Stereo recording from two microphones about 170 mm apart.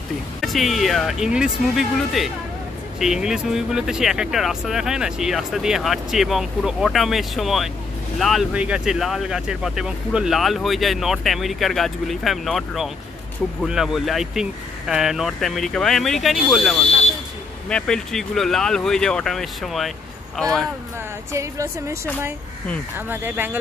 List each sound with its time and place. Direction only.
0.4 s speech: centre (ahead or behind)
21.3 s speech: 15° right (ahead or behind)